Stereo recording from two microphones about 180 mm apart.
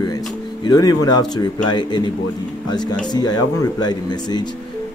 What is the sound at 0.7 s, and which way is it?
Speech, 20° left (ahead or behind).